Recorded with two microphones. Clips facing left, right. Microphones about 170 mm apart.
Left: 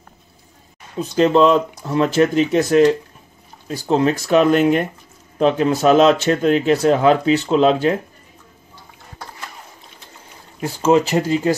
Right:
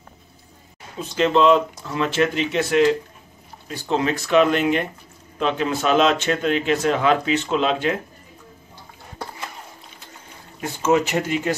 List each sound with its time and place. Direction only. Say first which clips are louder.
1.1 s speech: left 3 dB; 40° left (ahead or behind)
10.6 s speech: left 4 dB; 30° left (ahead or behind)